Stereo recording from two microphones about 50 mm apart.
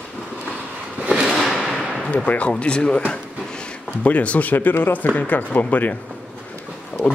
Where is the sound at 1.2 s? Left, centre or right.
Centre.